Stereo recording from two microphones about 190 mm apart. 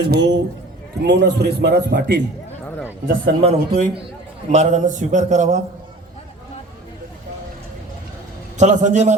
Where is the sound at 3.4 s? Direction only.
35° right (ahead or behind).